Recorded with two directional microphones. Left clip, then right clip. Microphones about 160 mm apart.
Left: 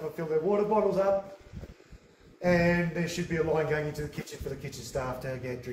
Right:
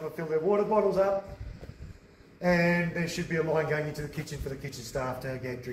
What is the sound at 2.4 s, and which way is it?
Speech, 25° left (ahead or behind).